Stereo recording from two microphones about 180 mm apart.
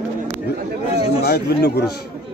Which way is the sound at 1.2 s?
60° left (ahead or behind).